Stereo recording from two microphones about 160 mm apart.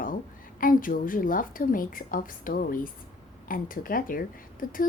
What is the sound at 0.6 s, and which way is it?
A woman's voice, 60° left (ahead or behind).